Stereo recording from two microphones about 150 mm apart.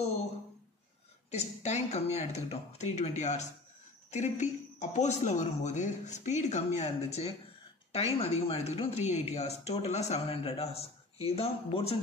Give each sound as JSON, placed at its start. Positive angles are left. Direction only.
{"t": 1.3, "sound": "speech", "side_deg": 50}
{"t": 7.9, "sound": "speech", "side_deg": 40}